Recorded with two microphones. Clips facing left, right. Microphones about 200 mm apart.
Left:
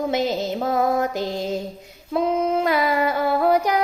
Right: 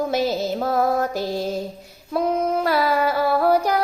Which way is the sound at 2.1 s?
20° left (ahead or behind).